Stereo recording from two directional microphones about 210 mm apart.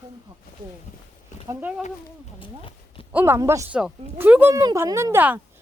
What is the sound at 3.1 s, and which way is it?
Speech, 10° right (ahead or behind).